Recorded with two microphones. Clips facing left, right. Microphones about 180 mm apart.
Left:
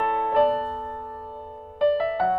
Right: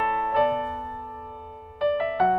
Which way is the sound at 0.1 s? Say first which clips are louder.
Left 2 dB; 5° right (ahead or behind).